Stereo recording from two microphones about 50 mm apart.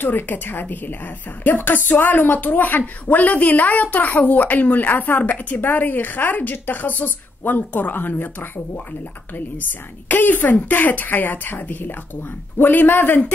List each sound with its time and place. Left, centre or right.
0.0 s a woman's voice: left